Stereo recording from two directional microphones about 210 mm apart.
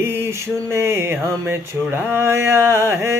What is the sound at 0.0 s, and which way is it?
Speech, 10° right (ahead or behind).